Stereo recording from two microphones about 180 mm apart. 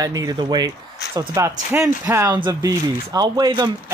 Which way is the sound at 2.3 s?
20° right (ahead or behind).